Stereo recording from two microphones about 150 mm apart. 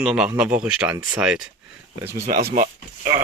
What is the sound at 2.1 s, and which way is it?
Speech, 80° right.